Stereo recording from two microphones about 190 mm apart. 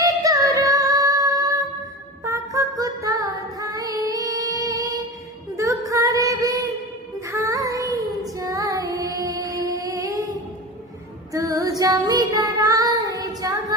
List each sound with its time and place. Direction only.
0.0 s music: 20° right (ahead or behind)
5.5 s child singing: 15° right (ahead or behind)
7.3 s music: 15° right (ahead or behind)
8.2 s child singing: 20° right (ahead or behind)
11.3 s child singing: 20° right (ahead or behind)